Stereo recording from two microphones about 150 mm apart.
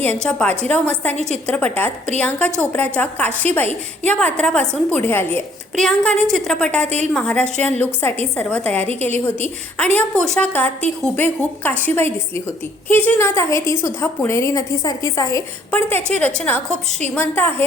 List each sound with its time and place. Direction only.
0.0 s a woman's voice: 10° left (ahead or behind)